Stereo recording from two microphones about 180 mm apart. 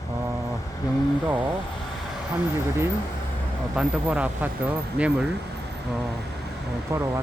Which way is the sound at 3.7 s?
5° right (ahead or behind).